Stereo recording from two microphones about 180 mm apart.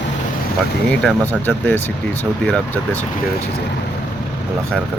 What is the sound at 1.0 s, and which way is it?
Speech, 10° left (ahead or behind).